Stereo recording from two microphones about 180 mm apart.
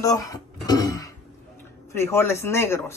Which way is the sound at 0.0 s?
20° left (ahead or behind).